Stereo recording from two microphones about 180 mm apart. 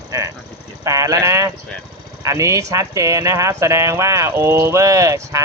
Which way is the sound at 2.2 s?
15° right (ahead or behind).